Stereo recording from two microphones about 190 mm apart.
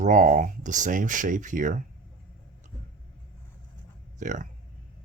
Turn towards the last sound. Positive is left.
turn(degrees=-40)  # may be behind; listen again after turning